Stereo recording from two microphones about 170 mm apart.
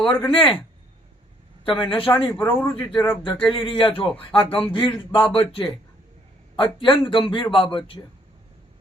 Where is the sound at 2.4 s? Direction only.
15° left (ahead or behind).